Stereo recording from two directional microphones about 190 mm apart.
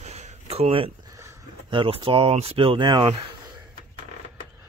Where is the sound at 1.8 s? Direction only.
30° right (ahead or behind).